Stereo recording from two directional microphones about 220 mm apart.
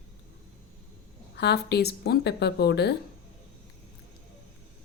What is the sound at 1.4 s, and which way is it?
Speech, 50° left (ahead or behind).